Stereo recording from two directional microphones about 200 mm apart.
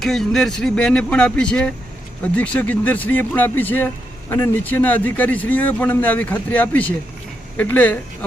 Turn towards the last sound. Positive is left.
turn(degrees=10)  # may be behind; listen again after turning